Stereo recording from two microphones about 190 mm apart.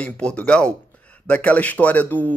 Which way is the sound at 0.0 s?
5° left (ahead or behind).